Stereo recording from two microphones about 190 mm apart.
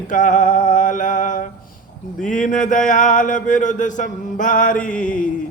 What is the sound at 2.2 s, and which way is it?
Speech, 40° left (ahead or behind).